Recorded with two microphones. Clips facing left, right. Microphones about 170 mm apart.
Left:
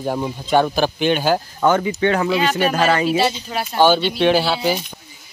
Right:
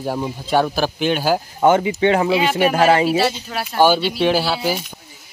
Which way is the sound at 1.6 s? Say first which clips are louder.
Right 4 dB; 20° right (ahead or behind).